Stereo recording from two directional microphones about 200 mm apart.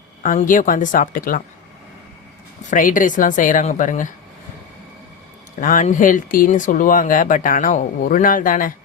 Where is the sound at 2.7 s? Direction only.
40° left (ahead or behind).